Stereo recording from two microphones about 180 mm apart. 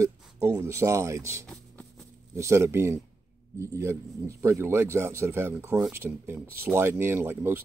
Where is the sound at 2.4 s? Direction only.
15° right (ahead or behind).